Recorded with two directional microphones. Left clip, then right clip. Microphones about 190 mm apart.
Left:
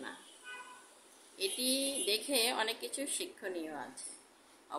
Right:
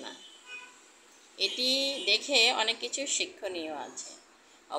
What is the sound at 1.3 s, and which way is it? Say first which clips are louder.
A woman's voice: right 7 dB; 10° left (ahead or behind).